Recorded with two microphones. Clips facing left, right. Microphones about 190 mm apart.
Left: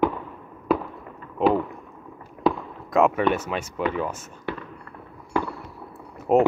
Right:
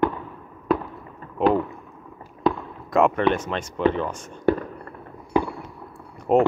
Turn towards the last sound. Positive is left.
turn(degrees=5)  # may be behind; listen again after turning